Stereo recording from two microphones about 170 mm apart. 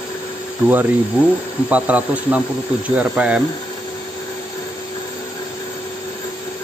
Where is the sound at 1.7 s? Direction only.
10° right (ahead or behind).